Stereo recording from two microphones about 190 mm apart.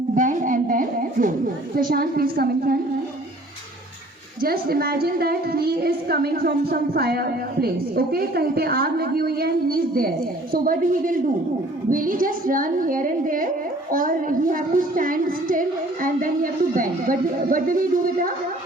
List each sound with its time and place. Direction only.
0.2 s a sound: 45° right (ahead or behind)
1.7 s a woman's voice: 50° right (ahead or behind)
4.4 s a woman's voice: 50° right (ahead or behind)